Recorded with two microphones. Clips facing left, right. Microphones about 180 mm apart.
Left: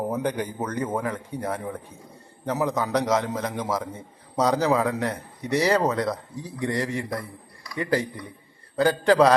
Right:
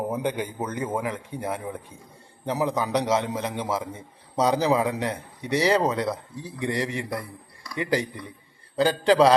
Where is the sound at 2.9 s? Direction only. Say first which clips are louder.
Left 1 dB; 25° right (ahead or behind).